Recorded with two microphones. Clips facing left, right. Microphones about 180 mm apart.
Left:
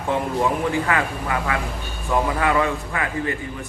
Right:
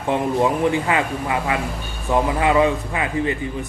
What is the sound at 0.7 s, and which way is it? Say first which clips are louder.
Speech: right 2 dB; 20° right (ahead or behind).